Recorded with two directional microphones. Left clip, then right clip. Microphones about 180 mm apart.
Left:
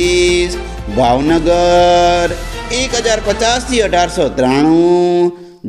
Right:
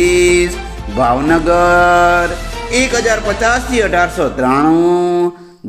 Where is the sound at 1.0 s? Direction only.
40° left (ahead or behind).